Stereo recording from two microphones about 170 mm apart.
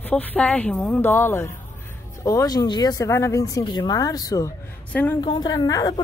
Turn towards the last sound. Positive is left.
turn(degrees=20)  # may be behind; listen again after turning